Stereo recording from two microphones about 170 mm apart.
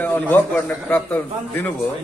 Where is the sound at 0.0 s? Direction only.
10° left (ahead or behind).